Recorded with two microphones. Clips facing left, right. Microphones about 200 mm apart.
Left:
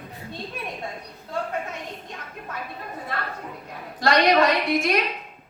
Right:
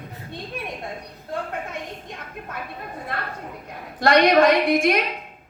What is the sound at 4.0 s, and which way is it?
Speech, 50° right (ahead or behind).